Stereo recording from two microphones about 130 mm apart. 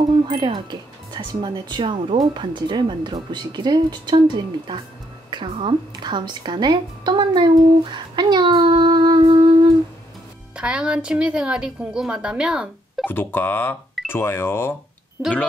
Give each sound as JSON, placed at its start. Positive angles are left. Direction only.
{"t": 0.3, "sound": "speech", "side_deg": -35}
{"t": 10.5, "sound": "a woman's voice", "side_deg": -10}
{"t": 13.0, "sound": "speech", "side_deg": 15}